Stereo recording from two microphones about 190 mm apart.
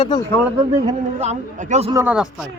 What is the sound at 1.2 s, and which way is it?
Speech, 35° right (ahead or behind).